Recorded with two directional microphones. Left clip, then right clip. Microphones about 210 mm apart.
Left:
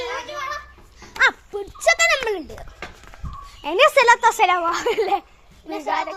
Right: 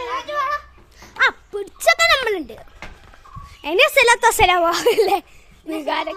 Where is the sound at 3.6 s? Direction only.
15° right (ahead or behind).